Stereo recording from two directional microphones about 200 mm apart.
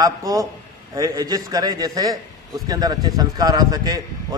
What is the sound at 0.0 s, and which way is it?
A man's voice, 20° right (ahead or behind).